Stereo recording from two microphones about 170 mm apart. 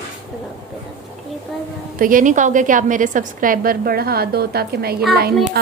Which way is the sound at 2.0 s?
50° right (ahead or behind).